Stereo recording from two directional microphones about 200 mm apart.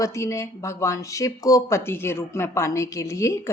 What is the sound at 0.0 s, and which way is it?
A woman's voice, 15° left (ahead or behind).